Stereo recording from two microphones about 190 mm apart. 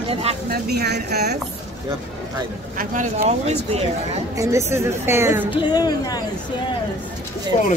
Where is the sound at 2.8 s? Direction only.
45° right (ahead or behind).